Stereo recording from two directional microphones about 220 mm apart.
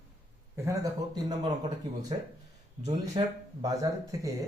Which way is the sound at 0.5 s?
15° right (ahead or behind).